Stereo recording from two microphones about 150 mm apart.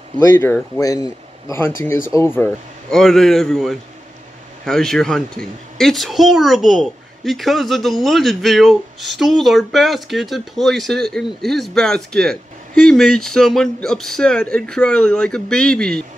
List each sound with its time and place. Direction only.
0.3 s a man's voice: 15° left (ahead or behind)
2.9 s a woman's voice: centre (ahead or behind)